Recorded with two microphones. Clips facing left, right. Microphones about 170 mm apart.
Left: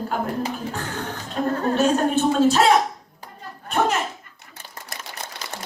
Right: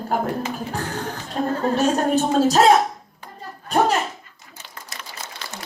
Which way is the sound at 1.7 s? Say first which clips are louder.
Even; 40° right (ahead or behind).